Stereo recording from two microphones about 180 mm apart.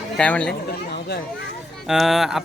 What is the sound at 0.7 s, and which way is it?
Chatter, 65° left (ahead or behind).